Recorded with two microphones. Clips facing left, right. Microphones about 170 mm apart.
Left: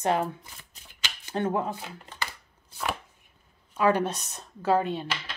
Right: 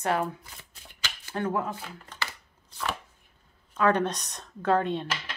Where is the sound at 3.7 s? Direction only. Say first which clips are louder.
Even; 10° left (ahead or behind).